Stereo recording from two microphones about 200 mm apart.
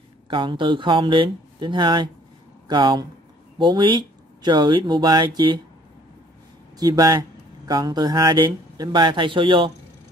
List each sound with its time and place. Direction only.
0.3 s speech: 25° right (ahead or behind)
6.8 s speech: 20° right (ahead or behind)